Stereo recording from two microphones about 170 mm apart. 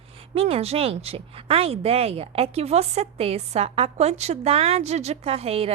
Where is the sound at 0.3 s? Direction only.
35° right (ahead or behind).